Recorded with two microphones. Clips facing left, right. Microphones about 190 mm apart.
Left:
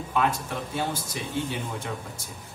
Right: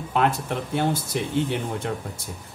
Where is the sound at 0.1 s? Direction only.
60° right (ahead or behind).